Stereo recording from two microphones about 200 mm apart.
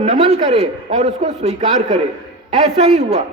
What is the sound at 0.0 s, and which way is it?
A man's voice, 30° right (ahead or behind).